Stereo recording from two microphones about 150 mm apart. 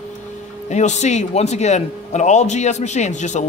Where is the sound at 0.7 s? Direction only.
50° left (ahead or behind).